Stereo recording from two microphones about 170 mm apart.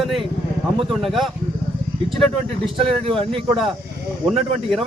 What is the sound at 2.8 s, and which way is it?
Speech, 35° right (ahead or behind).